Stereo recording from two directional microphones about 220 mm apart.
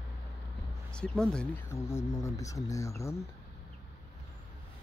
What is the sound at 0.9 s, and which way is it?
Speech, 5° left (ahead or behind).